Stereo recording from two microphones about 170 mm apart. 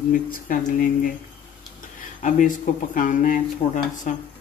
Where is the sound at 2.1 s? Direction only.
50° left (ahead or behind).